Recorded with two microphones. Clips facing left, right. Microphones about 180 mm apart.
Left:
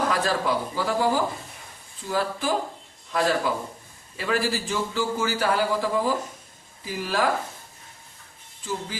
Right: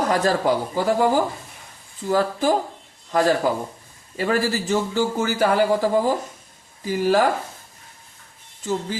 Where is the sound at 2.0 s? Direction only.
40° right (ahead or behind).